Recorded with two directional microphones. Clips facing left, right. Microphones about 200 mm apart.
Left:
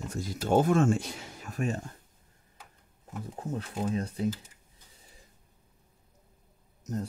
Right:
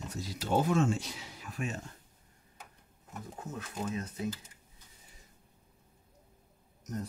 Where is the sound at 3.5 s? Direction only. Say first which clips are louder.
Left 6 dB; 30° left (ahead or behind).